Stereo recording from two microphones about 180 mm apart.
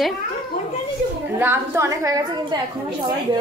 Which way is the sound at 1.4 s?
15° right (ahead or behind).